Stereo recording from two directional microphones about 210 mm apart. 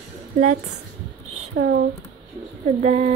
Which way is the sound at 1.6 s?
50° right (ahead or behind).